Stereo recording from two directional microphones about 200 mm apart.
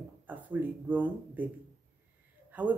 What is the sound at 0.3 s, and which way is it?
Speech, 10° right (ahead or behind).